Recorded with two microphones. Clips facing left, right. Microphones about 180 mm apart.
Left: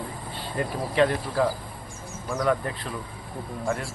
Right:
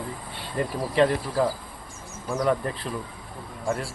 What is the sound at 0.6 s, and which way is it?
Speech, centre (ahead or behind).